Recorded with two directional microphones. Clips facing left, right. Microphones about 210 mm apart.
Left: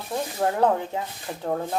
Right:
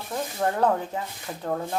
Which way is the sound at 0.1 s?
Centre (ahead or behind).